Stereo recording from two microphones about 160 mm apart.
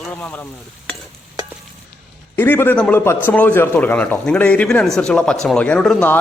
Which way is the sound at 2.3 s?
15° left (ahead or behind).